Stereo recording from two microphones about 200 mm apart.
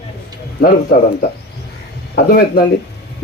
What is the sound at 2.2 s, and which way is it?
Speech, 50° left (ahead or behind).